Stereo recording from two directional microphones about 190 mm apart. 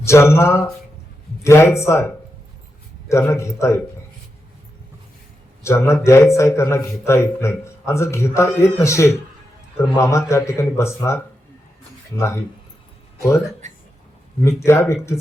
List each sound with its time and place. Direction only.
0.0 s a man's voice: 15° left (ahead or behind)
3.1 s a man's voice: 15° left (ahead or behind)
5.6 s a man's voice: 15° left (ahead or behind)
13.6 s a sound: 35° right (ahead or behind)
14.4 s a man's voice: 15° left (ahead or behind)